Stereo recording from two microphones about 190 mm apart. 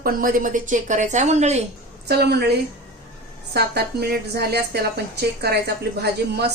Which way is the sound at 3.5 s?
55° right (ahead or behind).